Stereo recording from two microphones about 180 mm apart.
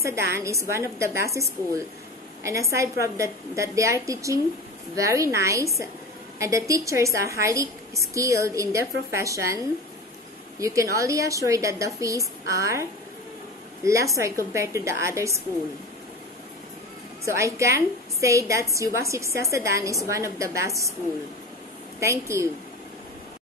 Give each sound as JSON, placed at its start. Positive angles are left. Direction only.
{"t": 0.0, "sound": "a woman's voice", "side_deg": -15}
{"t": 10.6, "sound": "a woman's voice", "side_deg": -15}
{"t": 13.8, "sound": "a woman's voice", "side_deg": -15}
{"t": 17.2, "sound": "a woman's voice", "side_deg": -15}
{"t": 22.0, "sound": "a woman's voice", "side_deg": -15}